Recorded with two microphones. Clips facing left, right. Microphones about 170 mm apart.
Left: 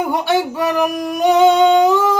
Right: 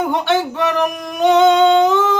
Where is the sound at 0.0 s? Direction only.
10° left (ahead or behind).